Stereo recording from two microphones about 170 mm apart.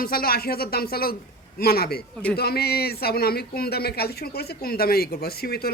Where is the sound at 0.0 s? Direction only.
60° left (ahead or behind).